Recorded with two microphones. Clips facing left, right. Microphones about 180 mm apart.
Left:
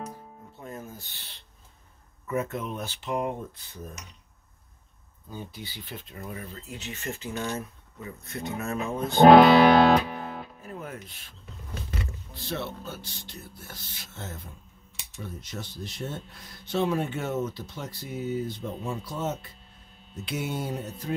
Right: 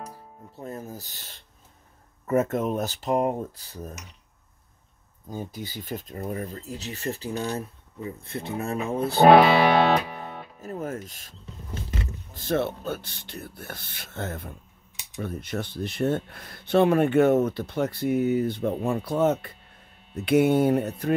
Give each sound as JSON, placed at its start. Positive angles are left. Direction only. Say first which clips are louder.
{"t": 0.6, "sound": "a sound", "louder": "right 4 dB", "side_deg": -35}
{"t": 2.2, "sound": "speech", "louder": "right 7 dB", "side_deg": -45}
{"t": 5.3, "sound": "speech", "louder": "right 5 dB", "side_deg": -45}
{"t": 9.1, "sound": "speech", "louder": "left 1 dB", "side_deg": -5}
{"t": 10.6, "sound": "speech", "louder": "right 7 dB", "side_deg": -40}